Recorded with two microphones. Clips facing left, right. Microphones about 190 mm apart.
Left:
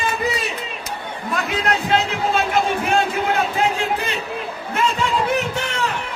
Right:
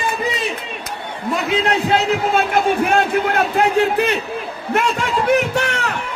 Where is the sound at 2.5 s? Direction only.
55° right (ahead or behind).